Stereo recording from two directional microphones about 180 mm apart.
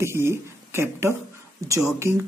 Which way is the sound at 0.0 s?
15° right (ahead or behind).